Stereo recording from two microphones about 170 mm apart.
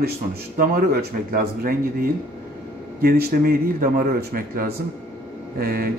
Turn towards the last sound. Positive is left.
turn(degrees=-60)  # may be behind; listen again after turning